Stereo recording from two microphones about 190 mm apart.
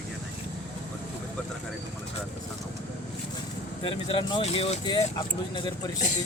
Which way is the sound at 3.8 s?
30° left (ahead or behind).